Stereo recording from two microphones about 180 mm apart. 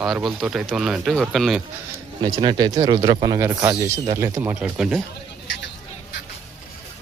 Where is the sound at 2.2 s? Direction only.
25° right (ahead or behind); by 5.0 s centre (ahead or behind).